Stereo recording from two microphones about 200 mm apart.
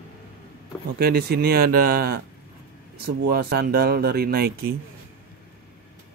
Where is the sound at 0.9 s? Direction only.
50° right (ahead or behind).